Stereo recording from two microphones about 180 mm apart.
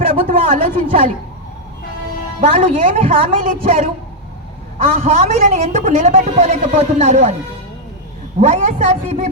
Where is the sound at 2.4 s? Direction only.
45° right (ahead or behind).